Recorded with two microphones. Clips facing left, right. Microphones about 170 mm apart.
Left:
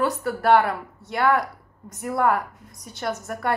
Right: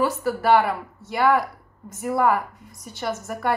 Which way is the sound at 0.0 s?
Centre (ahead or behind).